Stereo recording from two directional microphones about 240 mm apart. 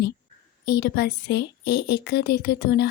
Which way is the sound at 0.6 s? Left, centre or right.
Left.